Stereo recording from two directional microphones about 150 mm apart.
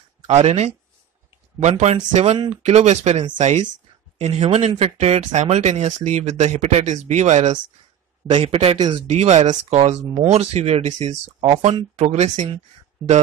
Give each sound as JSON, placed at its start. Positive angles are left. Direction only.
{"t": 0.3, "sound": "speech", "side_deg": -45}
{"t": 8.3, "sound": "speech", "side_deg": -35}
{"t": 11.4, "sound": "speech", "side_deg": -40}